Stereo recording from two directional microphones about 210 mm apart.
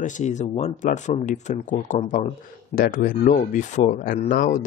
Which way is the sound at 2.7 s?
40° left (ahead or behind).